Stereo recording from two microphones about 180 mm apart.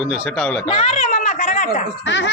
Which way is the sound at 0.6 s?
30° left (ahead or behind).